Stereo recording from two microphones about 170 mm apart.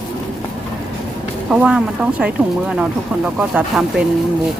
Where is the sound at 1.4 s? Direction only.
5° right (ahead or behind).